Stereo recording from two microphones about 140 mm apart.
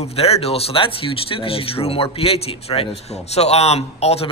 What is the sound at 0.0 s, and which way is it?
Speech, 45° left (ahead or behind).